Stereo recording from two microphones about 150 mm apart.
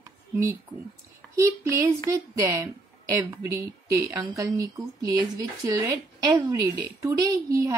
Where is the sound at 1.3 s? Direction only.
20° right (ahead or behind).